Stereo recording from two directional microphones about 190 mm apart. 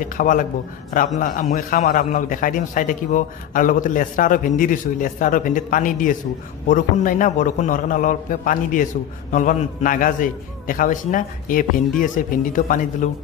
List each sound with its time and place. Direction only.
0.0 s a man's voice: 45° left (ahead or behind)